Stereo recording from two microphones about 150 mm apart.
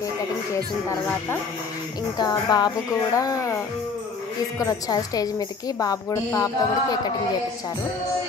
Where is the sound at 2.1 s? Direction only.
30° left (ahead or behind).